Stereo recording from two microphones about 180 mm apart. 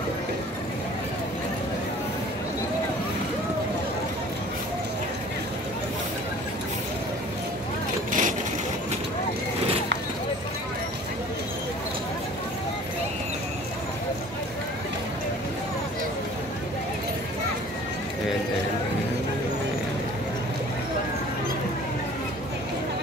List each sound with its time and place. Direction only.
8.1 s vehicle: 45° right (ahead or behind)